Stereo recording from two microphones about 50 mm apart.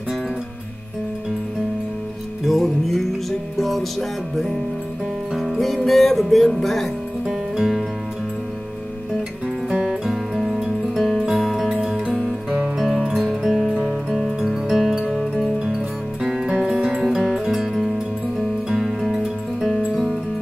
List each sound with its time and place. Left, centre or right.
2.4 s music: centre
5.3 s music: centre
9.7 s music: centre
17.0 s music: centre